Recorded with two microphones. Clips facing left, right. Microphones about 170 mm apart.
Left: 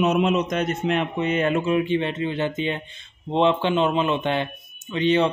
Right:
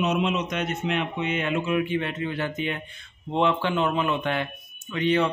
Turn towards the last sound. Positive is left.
turn(degrees=25)  # may be behind; listen again after turning